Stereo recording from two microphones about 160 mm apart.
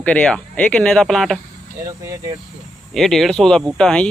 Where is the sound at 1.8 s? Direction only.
20° right (ahead or behind).